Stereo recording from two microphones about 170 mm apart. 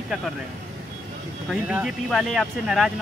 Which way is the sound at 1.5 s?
5° right (ahead or behind).